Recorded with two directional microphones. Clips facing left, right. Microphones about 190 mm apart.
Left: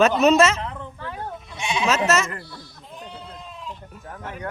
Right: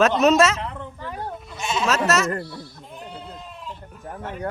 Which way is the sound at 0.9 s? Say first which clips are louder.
Right 1 dB; 10° right (ahead or behind).